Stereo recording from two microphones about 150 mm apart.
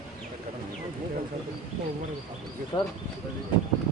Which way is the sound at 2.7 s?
35° left (ahead or behind).